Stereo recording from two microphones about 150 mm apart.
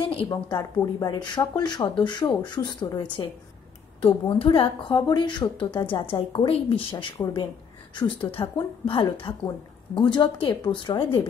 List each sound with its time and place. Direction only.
0.3 s a woman's voice: 25° left (ahead or behind)